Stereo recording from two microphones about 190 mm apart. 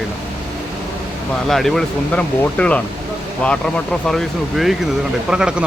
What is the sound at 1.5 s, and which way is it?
Speech, centre (ahead or behind).